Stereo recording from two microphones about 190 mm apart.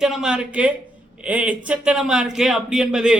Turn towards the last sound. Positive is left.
turn(degrees=-5)  # may be behind; listen again after turning